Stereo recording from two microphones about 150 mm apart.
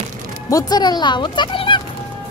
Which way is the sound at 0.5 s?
25° left (ahead or behind).